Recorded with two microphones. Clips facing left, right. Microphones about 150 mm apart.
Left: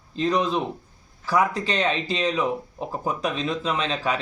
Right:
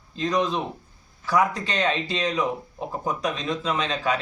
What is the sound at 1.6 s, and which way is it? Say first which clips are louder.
Speech: left 1 dB; 30° left (ahead or behind).